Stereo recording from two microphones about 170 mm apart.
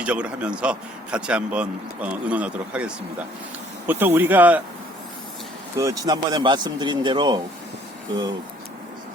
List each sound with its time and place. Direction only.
0.0 s speech: 5° right (ahead or behind)
5.7 s speech: 20° right (ahead or behind)